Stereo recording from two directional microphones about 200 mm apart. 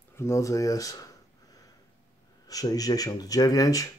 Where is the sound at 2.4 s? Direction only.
20° left (ahead or behind).